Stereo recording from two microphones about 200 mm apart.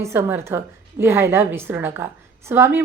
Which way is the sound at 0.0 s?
10° right (ahead or behind).